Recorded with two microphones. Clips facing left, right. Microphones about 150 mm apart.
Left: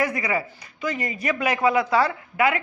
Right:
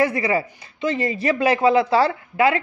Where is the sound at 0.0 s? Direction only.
30° right (ahead or behind).